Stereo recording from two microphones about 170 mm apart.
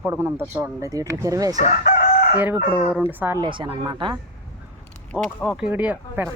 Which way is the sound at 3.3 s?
25° right (ahead or behind).